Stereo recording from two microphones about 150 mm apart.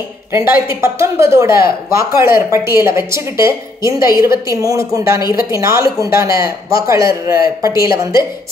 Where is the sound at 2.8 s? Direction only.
20° right (ahead or behind).